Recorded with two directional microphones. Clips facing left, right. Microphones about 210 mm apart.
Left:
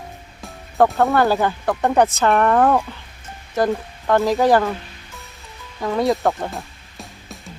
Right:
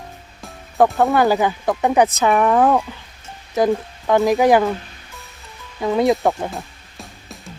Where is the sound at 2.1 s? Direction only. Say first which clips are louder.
Even; 20° right (ahead or behind).